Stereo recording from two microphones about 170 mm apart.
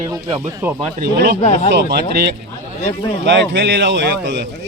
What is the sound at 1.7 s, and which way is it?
Speech, 70° right (ahead or behind).